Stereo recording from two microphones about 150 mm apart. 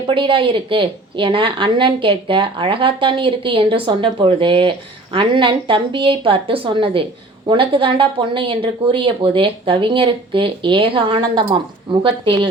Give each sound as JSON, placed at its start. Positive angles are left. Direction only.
{"t": 0.1, "sound": "a woman's voice", "side_deg": -35}